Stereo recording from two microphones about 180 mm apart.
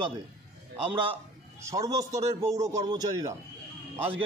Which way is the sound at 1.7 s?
20° right (ahead or behind).